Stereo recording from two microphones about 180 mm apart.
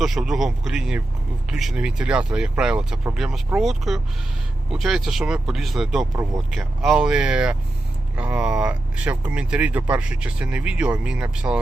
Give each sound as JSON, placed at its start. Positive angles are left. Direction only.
{"t": 0.0, "sound": "speech", "side_deg": 0}